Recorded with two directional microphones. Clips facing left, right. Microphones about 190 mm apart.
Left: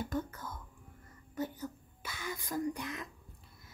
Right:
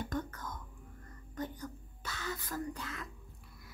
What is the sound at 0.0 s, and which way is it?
Whispering, 10° left (ahead or behind).